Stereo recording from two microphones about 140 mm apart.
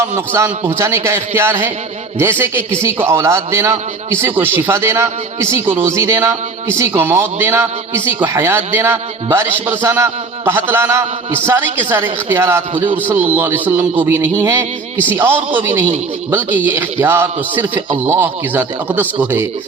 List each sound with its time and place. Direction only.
0.3 s a man's voice: 20° right (ahead or behind)